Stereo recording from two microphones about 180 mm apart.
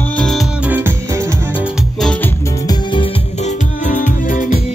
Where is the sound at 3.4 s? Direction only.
45° left (ahead or behind).